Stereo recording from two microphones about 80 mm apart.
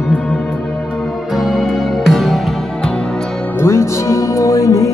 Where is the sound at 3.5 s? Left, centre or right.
Left.